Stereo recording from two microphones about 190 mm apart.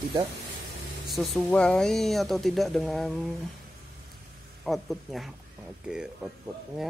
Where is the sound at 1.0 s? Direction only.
Centre (ahead or behind).